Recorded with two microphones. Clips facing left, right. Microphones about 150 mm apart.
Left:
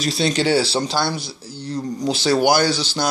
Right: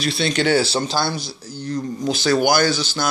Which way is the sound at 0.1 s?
35° left (ahead or behind).